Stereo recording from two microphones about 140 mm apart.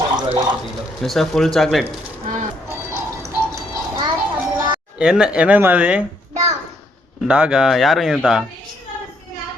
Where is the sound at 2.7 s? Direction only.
20° right (ahead or behind).